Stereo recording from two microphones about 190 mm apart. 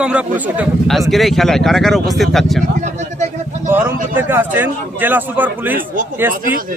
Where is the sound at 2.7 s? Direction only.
40° right (ahead or behind).